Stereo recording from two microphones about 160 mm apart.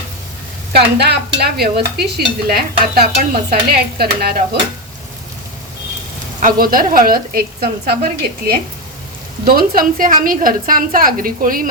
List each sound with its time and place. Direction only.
0.7 s stir: 90° right
2.0 s stir: 85° right
3.5 s speech: 75° right (ahead or behind)
6.4 s a woman's voice: 65° right (ahead or behind)